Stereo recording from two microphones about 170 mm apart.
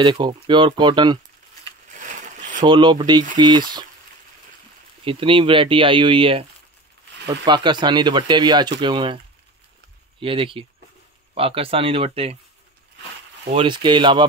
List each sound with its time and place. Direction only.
0.0 s speech: 30° right (ahead or behind)
2.6 s speech: 25° right (ahead or behind)
5.0 s speech: 30° right (ahead or behind)
10.2 s speech: 30° right (ahead or behind)
13.5 s speech: 30° right (ahead or behind)